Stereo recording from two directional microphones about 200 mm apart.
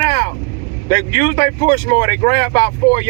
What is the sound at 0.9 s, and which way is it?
Speech, 20° left (ahead or behind).